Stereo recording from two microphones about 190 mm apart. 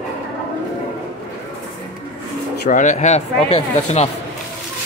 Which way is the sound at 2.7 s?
40° left (ahead or behind).